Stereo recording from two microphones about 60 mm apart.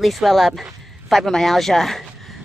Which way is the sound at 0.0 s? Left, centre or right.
Centre.